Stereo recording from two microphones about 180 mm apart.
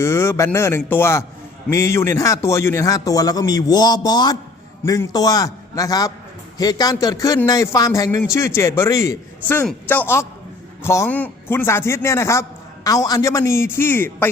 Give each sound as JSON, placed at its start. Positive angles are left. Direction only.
{"t": 0.0, "sound": "a man's voice", "side_deg": 15}